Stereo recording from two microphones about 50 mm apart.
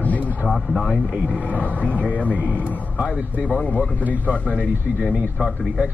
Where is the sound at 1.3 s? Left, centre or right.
Left.